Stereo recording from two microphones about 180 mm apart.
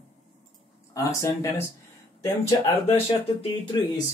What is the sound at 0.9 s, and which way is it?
Speech, 15° left (ahead or behind).